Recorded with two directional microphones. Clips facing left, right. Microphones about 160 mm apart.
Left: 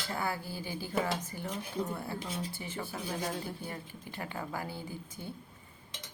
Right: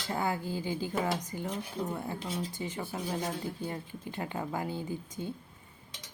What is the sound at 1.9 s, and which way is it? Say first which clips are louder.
Speech: right 2 dB; 15° right (ahead or behind).